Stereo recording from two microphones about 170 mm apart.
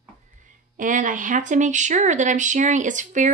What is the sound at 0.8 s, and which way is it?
A woman's voice, 50° right (ahead or behind).